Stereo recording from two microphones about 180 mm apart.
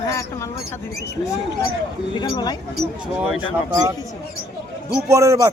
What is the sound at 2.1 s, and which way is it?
Speech, 25° left (ahead or behind).